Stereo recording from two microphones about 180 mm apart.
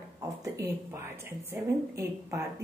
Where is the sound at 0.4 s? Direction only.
15° right (ahead or behind).